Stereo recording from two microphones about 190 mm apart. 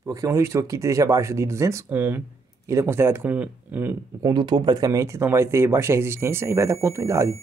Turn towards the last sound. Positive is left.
turn(degrees=-15)  # may be behind; listen again after turning